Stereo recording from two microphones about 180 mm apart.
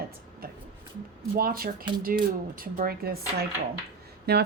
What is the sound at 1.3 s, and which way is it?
A woman's voice, 55° right (ahead or behind).